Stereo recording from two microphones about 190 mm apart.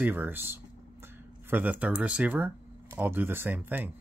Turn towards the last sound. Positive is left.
turn(degrees=-10)  # may be behind; listen again after turning